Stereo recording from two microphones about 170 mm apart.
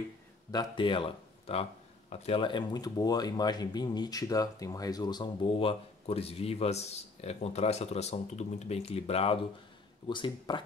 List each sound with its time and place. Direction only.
0.5 s speech: 25° left (ahead or behind)